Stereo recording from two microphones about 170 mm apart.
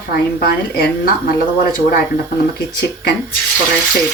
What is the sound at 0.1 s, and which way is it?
A woman's voice, 60° left (ahead or behind).